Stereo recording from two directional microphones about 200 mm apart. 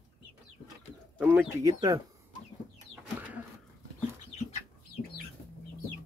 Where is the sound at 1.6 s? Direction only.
20° right (ahead or behind).